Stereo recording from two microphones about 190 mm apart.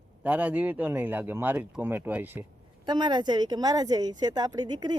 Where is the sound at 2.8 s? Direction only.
25° right (ahead or behind).